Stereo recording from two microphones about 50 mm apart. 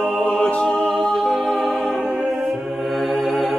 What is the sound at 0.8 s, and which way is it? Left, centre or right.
Music, centre.